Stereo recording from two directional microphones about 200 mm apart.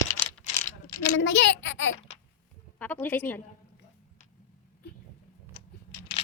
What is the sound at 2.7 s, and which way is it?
Speech, 10° left (ahead or behind).